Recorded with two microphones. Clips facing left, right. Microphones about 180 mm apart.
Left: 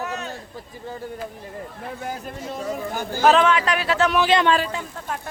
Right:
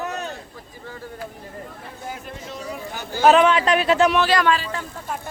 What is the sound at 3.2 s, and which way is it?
Speech, 10° right (ahead or behind).